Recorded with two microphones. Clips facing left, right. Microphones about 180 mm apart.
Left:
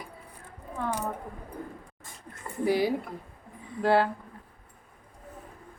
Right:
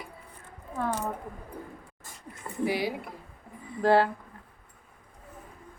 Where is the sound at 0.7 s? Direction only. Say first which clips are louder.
Right 1 dB; 10° left (ahead or behind).